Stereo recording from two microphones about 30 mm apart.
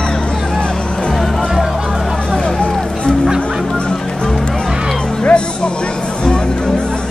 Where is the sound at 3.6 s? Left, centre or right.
Left.